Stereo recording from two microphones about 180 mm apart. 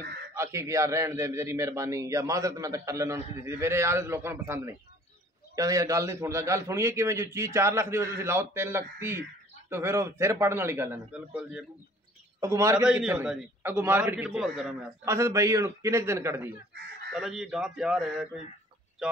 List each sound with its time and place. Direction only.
0.3 s a man's voice: 15° right (ahead or behind)
12.8 s a man's voice: 5° right (ahead or behind)
15.0 s a man's voice: 15° right (ahead or behind)
17.1 s a man's voice: 5° right (ahead or behind)